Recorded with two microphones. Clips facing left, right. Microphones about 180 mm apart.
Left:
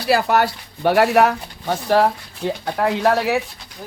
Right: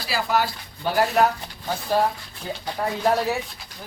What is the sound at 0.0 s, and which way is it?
Speech, 60° left (ahead or behind).